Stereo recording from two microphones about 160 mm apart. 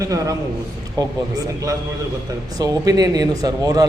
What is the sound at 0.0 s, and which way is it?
Speech, 20° right (ahead or behind).